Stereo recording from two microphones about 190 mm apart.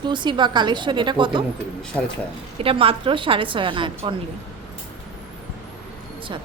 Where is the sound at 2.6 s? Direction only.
30° right (ahead or behind).